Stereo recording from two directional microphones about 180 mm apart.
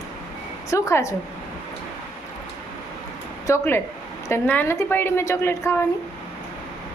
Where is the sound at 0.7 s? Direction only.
15° left (ahead or behind).